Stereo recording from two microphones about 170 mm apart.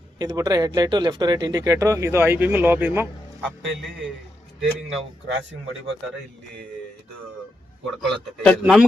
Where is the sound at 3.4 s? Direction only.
5° left (ahead or behind).